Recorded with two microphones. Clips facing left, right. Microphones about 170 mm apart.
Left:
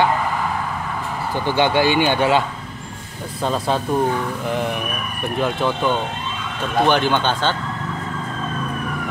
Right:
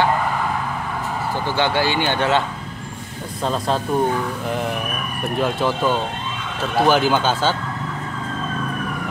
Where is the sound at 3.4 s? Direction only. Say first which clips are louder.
Left 1 dB; centre (ahead or behind).